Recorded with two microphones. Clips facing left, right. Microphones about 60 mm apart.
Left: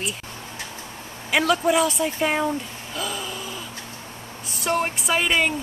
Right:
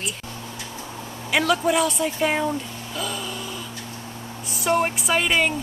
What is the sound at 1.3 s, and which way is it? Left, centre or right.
Speech, centre.